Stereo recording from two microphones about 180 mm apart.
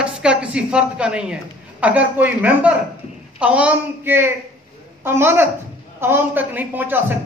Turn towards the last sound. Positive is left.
turn(degrees=-10)  # may be behind; listen again after turning